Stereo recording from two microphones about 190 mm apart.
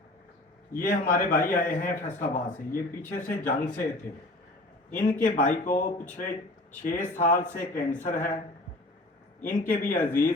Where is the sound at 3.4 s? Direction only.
45° left (ahead or behind).